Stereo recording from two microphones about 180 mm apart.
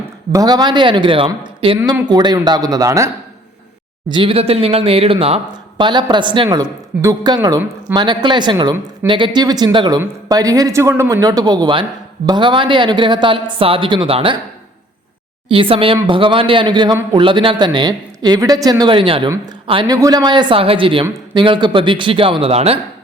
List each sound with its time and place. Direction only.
0.3 s speech: 20° right (ahead or behind)
4.1 s speech: 30° right (ahead or behind)
15.4 s speech: 30° right (ahead or behind)